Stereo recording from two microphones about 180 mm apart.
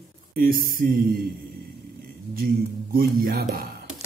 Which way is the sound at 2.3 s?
55° right (ahead or behind).